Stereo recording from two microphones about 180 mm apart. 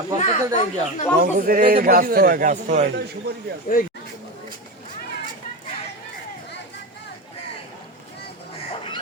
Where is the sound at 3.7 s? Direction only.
50° left (ahead or behind).